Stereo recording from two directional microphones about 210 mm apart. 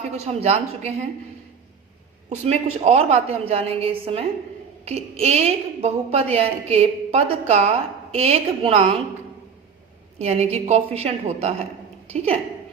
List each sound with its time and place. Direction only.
0.3 s a woman's voice: 30° right (ahead or behind)
2.3 s a woman's voice: 30° right (ahead or behind)
10.2 s a woman's voice: 30° right (ahead or behind)